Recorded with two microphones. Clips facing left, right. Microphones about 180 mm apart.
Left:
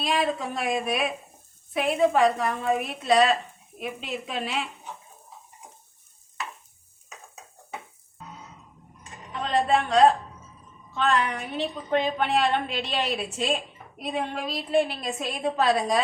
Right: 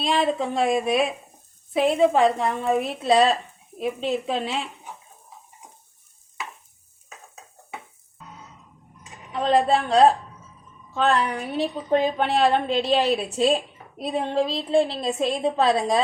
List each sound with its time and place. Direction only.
0.0 s a woman's voice: 30° right (ahead or behind)
9.3 s a woman's voice: 35° right (ahead or behind)